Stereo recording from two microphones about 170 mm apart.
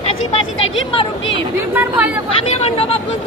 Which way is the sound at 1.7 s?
10° right (ahead or behind).